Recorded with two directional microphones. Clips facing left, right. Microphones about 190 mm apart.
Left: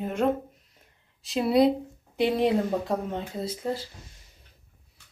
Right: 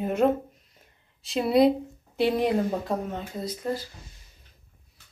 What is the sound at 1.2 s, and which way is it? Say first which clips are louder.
Speech: right 1 dB; centre (ahead or behind).